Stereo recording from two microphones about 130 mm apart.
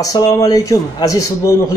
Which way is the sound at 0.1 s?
30° left (ahead or behind).